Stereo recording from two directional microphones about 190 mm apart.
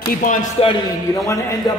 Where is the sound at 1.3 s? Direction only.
15° left (ahead or behind).